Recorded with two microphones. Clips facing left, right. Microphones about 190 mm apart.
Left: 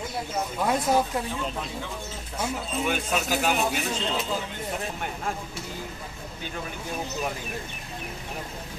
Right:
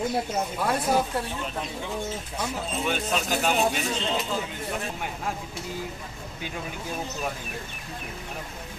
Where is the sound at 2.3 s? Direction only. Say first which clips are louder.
Left 3 dB; 10° left (ahead or behind).